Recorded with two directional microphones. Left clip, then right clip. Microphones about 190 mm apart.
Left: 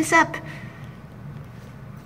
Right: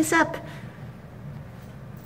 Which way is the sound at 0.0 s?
Centre (ahead or behind).